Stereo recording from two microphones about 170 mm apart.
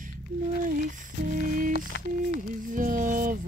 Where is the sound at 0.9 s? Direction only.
50° right (ahead or behind).